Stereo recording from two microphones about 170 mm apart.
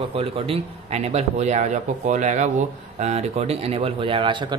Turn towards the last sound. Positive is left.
turn(degrees=-30)  # may be behind; listen again after turning